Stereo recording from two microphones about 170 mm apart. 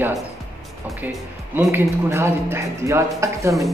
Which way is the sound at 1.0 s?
15° right (ahead or behind).